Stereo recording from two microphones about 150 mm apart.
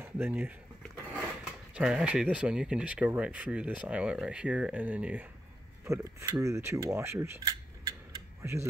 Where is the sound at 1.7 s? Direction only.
5° right (ahead or behind).